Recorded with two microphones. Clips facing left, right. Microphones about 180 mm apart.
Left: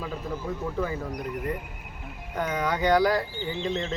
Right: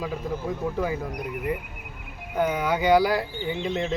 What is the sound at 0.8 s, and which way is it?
Speech, 10° right (ahead or behind).